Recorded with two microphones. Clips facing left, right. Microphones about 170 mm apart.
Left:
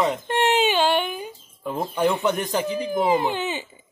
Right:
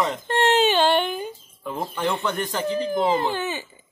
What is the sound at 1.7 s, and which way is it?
Speech, 20° left (ahead or behind).